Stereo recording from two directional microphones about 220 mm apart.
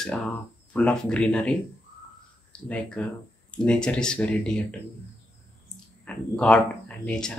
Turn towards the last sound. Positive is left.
turn(degrees=5)  # may be behind; listen again after turning